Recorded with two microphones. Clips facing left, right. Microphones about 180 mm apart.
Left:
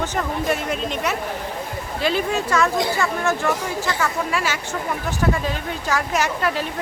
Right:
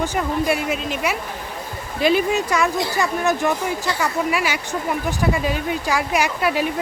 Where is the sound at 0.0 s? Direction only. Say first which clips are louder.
Right 2 dB; 10° right (ahead or behind).